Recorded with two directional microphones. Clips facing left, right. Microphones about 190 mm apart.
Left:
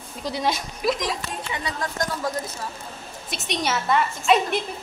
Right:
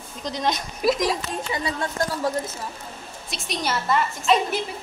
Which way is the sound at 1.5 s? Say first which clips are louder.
Right 2 dB; 30° right (ahead or behind).